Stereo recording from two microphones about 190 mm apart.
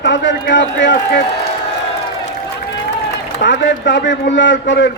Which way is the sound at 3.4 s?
70° left (ahead or behind).